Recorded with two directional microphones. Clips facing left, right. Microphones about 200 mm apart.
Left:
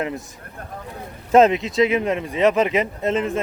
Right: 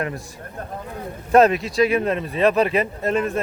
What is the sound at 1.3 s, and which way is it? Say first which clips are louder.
Speech: left 1 dB; 20° left (ahead or behind).